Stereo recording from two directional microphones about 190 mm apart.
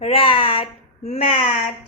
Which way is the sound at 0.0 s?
30° left (ahead or behind).